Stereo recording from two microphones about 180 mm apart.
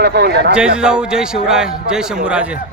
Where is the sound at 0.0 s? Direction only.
65° right (ahead or behind).